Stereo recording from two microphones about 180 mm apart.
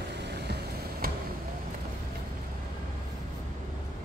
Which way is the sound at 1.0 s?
55° right (ahead or behind).